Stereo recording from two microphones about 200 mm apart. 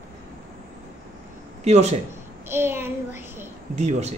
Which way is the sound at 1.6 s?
35° right (ahead or behind).